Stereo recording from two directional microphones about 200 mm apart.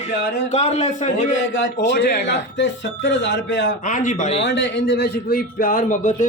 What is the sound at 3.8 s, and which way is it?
Speech, 40° left (ahead or behind).